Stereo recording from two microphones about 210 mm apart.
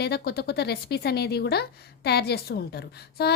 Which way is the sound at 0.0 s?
50° left (ahead or behind).